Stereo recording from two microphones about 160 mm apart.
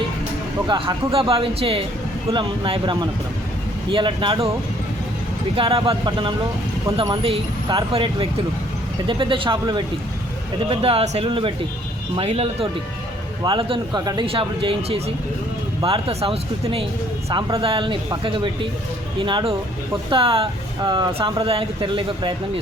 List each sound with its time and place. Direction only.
0.7 s speech: 35° right (ahead or behind)
5.5 s speech: 35° right (ahead or behind)